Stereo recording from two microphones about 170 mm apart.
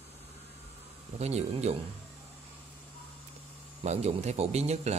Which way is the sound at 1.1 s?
40° right (ahead or behind).